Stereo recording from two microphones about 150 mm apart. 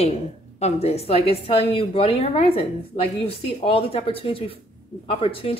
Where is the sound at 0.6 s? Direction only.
45° left (ahead or behind).